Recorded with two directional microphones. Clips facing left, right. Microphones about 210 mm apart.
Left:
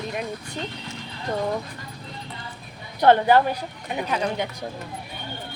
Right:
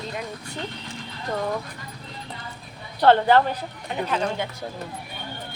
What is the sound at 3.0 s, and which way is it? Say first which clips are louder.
A woman's voice: even; 15° left (ahead or behind).